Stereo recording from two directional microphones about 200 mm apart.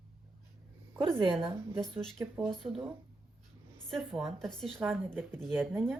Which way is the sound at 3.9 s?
Centre (ahead or behind).